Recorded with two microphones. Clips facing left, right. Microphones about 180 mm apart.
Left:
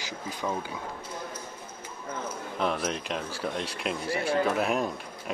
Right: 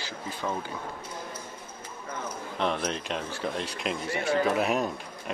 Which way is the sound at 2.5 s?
5° left (ahead or behind).